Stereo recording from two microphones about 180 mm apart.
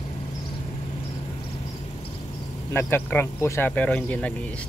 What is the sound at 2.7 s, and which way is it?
Speech, 10° left (ahead or behind).